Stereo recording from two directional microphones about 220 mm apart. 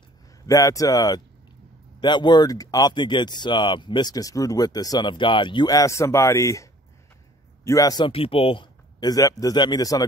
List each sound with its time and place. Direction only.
0.5 s speech: 15° left (ahead or behind)